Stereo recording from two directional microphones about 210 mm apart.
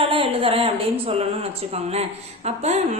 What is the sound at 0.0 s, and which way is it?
A woman's voice, 25° right (ahead or behind).